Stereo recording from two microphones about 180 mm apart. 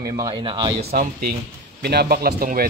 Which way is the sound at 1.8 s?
60° right (ahead or behind).